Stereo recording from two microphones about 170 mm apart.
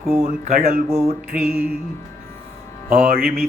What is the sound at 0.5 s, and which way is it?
Speech, 55° right (ahead or behind).